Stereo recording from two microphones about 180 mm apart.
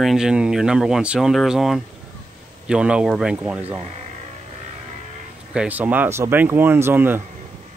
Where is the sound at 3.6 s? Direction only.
35° right (ahead or behind).